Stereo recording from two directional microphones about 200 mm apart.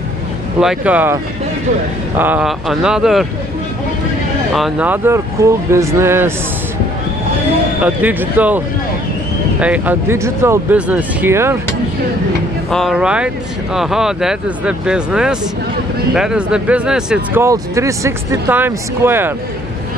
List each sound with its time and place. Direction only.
0.6 s speech: 5° right (ahead or behind)
2.1 s speech: 10° right (ahead or behind)
4.6 s speech: 5° right (ahead or behind)
7.8 s speech: 10° right (ahead or behind)
12.7 s speech: centre (ahead or behind)